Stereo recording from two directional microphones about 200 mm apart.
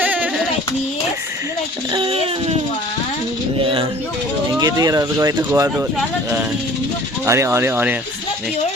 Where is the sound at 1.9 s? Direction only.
25° right (ahead or behind).